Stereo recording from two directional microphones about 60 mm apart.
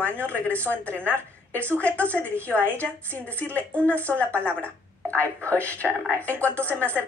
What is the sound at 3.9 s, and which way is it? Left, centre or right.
Speech, right.